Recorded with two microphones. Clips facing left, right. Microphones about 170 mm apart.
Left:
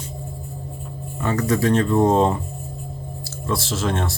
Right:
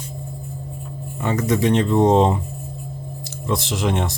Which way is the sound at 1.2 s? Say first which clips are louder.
Right 1 dB; 20° right (ahead or behind).